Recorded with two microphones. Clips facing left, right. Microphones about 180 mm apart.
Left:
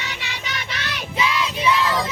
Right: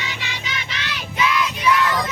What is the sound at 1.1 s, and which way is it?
Music, 25° left (ahead or behind).